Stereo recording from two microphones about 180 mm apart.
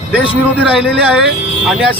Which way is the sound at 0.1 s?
5° right (ahead or behind).